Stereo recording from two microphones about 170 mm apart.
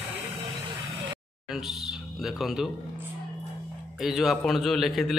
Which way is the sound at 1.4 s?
Centre (ahead or behind).